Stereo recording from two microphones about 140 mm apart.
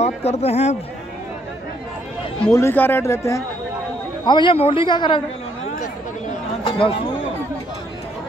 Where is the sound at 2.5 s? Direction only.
15° left (ahead or behind).